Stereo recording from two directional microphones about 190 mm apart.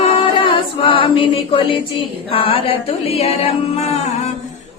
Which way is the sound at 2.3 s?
30° left (ahead or behind).